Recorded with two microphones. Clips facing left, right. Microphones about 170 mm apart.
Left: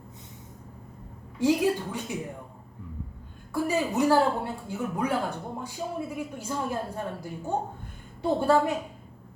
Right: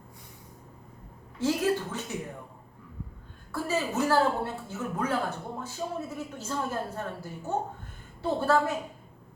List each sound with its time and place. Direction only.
1.4 s speech: 15° left (ahead or behind)
3.5 s speech: 15° left (ahead or behind)